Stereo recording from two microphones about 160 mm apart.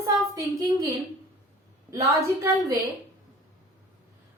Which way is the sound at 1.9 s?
20° right (ahead or behind).